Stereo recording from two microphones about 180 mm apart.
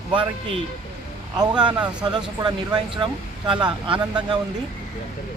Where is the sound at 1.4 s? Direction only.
25° right (ahead or behind).